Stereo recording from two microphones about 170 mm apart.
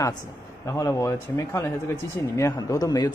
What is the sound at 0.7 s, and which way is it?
Speech, 20° left (ahead or behind).